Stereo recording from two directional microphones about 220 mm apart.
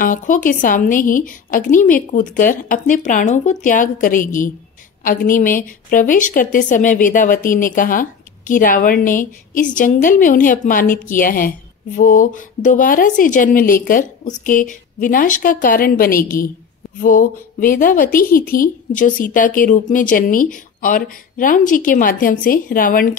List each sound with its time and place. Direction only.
0.0 s a woman's voice: 35° left (ahead or behind)